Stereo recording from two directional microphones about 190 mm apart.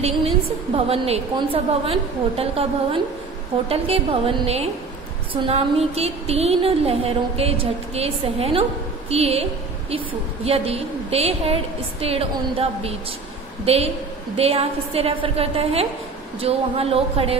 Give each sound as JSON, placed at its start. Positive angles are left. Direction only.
{"t": 0.7, "sound": "a woman's voice", "side_deg": -30}